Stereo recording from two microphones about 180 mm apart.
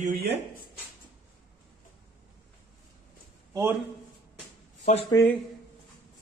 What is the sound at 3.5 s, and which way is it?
Speech, 15° right (ahead or behind).